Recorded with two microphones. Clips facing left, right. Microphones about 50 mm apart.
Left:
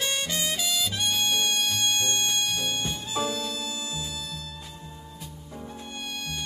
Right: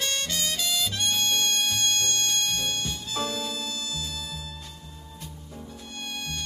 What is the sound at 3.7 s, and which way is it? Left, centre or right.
Music, centre.